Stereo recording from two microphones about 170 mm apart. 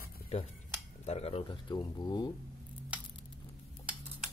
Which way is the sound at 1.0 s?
40° left (ahead or behind).